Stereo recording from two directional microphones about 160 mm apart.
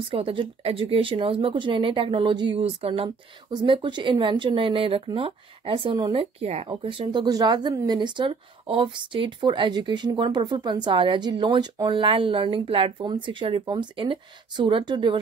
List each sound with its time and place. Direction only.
0.0 s speech: 35° right (ahead or behind)